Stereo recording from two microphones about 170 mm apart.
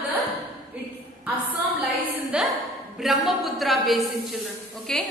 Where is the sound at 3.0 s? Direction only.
Centre (ahead or behind).